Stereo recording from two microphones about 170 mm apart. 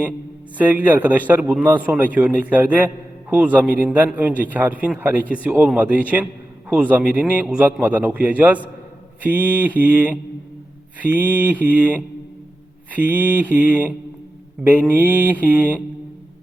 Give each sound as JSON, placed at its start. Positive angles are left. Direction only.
{"t": 0.6, "sound": "a man's voice", "side_deg": -10}